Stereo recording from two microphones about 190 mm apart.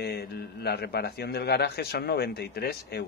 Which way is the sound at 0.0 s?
60° left (ahead or behind).